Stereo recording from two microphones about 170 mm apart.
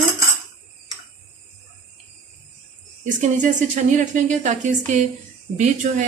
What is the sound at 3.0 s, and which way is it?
Speech, 45° right (ahead or behind).